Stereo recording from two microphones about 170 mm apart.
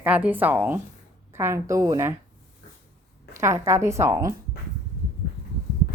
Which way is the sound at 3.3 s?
15° right (ahead or behind).